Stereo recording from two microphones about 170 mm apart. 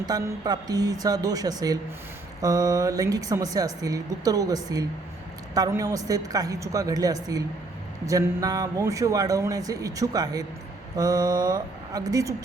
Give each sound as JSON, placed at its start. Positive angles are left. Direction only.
{"t": 0.0, "sound": "a woman's voice", "side_deg": -25}